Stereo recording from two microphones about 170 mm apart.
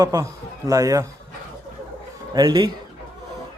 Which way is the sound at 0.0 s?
20° right (ahead or behind).